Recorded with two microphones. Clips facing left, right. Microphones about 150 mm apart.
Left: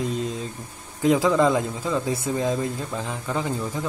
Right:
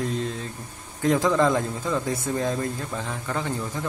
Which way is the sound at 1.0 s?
10° left (ahead or behind).